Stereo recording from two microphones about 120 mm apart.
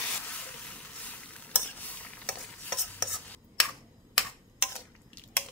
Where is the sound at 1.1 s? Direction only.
15° left (ahead or behind).